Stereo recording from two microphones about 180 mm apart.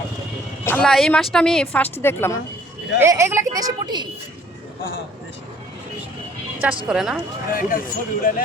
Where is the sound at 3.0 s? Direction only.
15° right (ahead or behind).